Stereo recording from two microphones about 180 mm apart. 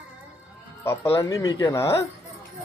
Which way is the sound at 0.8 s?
15° left (ahead or behind).